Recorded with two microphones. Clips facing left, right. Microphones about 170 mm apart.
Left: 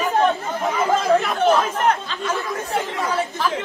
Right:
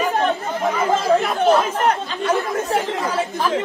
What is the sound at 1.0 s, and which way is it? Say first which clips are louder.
Speech: right 1 dB; 35° right (ahead or behind).